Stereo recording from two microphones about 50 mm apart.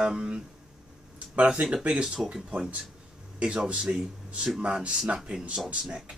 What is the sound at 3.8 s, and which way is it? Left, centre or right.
Speech, centre.